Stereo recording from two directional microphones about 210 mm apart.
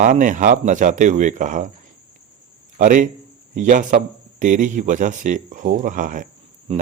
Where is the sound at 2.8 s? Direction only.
40° right (ahead or behind).